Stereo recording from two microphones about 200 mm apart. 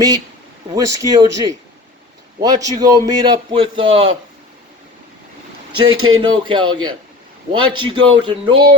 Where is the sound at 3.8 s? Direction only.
80° right.